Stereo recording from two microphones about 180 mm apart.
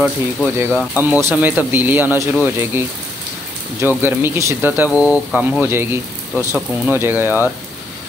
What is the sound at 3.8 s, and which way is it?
Speech, 10° right (ahead or behind).